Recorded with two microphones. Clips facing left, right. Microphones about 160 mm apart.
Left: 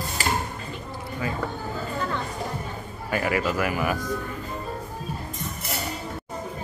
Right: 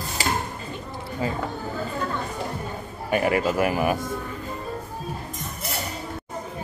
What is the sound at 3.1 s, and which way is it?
Speech, 25° right (ahead or behind).